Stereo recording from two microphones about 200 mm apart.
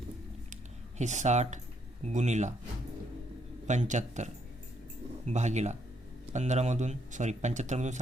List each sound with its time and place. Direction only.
0.5 s a sound: 35° right (ahead or behind)
2.0 s speech: 35° right (ahead or behind)
3.7 s speech: 35° right (ahead or behind)